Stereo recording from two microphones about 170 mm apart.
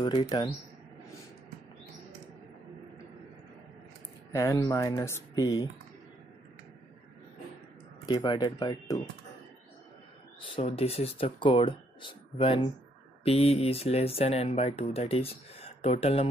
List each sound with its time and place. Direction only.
0.0 s speech: 25° left (ahead or behind)
4.3 s speech: 20° left (ahead or behind)
8.1 s speech: 25° left (ahead or behind)
10.4 s speech: 35° left (ahead or behind)